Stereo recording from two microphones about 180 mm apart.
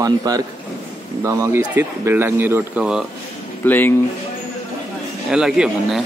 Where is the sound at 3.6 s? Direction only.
10° left (ahead or behind).